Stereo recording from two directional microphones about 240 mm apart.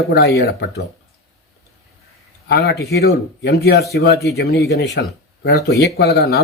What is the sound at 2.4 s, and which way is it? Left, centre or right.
Speech, left.